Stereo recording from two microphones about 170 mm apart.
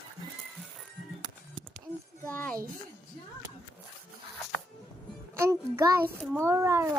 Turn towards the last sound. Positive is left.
turn(degrees=-15)  # may be behind; listen again after turning